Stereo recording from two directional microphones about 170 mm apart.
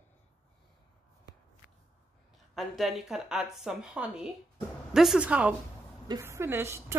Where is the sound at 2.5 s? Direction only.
Centre (ahead or behind).